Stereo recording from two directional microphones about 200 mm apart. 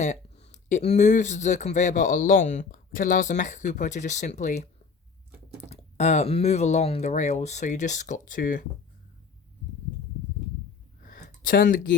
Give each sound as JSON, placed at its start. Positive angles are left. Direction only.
{"t": 0.0, "sound": "speech", "side_deg": 35}
{"t": 5.7, "sound": "speech", "side_deg": 35}
{"t": 11.0, "sound": "a sound", "side_deg": 40}